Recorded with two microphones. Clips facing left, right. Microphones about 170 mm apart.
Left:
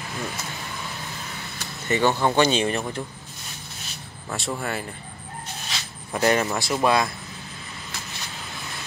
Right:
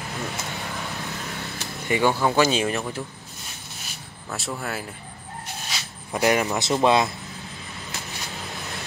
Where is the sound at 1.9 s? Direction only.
10° right (ahead or behind).